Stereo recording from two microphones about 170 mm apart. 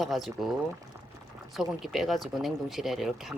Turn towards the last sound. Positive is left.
turn(degrees=0)  # may be behind; listen again after turning